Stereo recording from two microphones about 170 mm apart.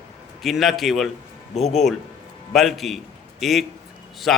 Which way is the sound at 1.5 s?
40° left (ahead or behind).